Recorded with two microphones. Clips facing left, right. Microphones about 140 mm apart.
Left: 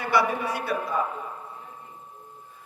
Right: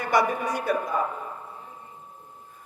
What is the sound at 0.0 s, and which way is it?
Speech, 45° right (ahead or behind).